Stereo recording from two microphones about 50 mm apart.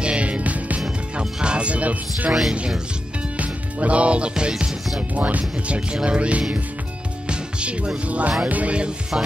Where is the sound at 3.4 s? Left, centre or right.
Right.